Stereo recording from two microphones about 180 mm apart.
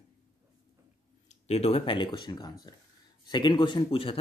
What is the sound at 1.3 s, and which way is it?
Speech, 35° left (ahead or behind).